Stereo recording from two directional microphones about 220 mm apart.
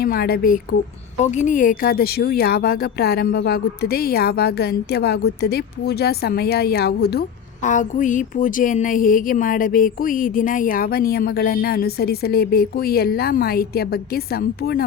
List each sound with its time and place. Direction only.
0.0 s speech: 45° left (ahead or behind)